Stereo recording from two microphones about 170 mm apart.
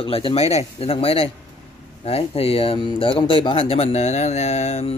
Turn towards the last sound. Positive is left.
turn(degrees=40)  # may be behind; listen again after turning